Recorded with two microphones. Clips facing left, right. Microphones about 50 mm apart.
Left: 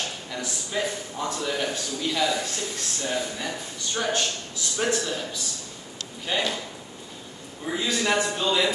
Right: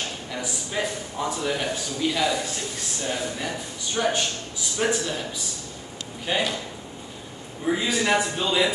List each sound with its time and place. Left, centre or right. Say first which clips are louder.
0.3 s a man's voice: right 1 dB; centre
7.6 s a man's voice: right 3 dB; centre